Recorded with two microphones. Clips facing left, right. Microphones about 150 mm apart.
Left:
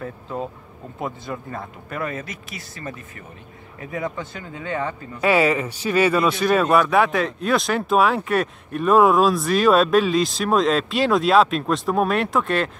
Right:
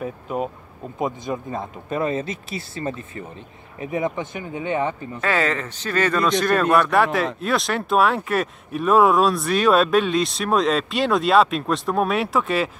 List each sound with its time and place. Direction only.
0.0 s speech: 15° right (ahead or behind)
5.2 s speech: 10° left (ahead or behind)